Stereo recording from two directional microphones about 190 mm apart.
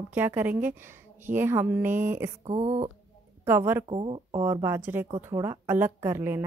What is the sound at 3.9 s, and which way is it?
Speech, 30° right (ahead or behind).